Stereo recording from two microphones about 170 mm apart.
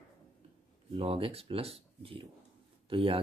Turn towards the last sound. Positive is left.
turn(degrees=-30)  # may be behind; listen again after turning